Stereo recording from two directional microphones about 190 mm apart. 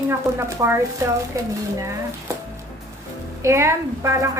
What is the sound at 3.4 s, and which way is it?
Speech, 15° right (ahead or behind).